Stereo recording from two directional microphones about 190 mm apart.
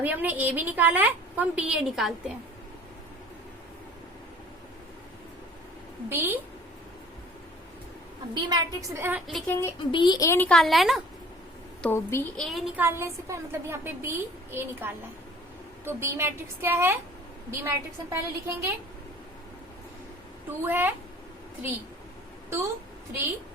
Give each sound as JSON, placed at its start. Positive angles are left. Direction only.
{"t": 0.0, "sound": "a woman's voice", "side_deg": -10}
{"t": 6.1, "sound": "a woman's voice", "side_deg": -10}
{"t": 8.3, "sound": "a woman's voice", "side_deg": -25}
{"t": 9.2, "sound": "a woman's voice", "side_deg": 5}
{"t": 9.9, "sound": "a child's voice", "side_deg": 25}
{"t": 11.8, "sound": "a child's voice", "side_deg": 10}
{"t": 12.4, "sound": "a woman's voice", "side_deg": -5}
{"t": 20.7, "sound": "a woman's voice", "side_deg": -10}
{"t": 22.4, "sound": "a woman's voice", "side_deg": -15}